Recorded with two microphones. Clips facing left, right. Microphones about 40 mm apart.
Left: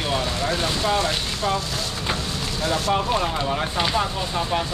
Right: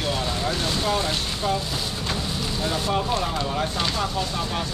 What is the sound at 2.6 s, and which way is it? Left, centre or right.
Speech, centre.